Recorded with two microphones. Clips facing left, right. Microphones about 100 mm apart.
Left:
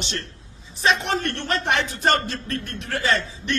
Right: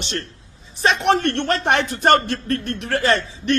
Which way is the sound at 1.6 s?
55° right (ahead or behind).